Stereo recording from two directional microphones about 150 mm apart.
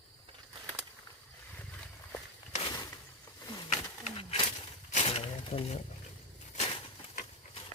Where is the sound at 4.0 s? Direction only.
40° left (ahead or behind).